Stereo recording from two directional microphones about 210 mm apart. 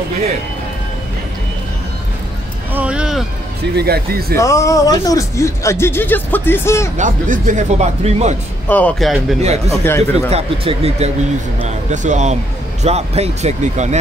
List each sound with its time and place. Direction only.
2.7 s speech: 5° right (ahead or behind)
3.7 s speech: 50° right (ahead or behind)
4.4 s speech: 15° left (ahead or behind)
7.0 s speech: 35° right (ahead or behind)
8.6 s speech: 5° left (ahead or behind)
9.7 s speech: 15° left (ahead or behind)
10.3 s speech: 25° right (ahead or behind)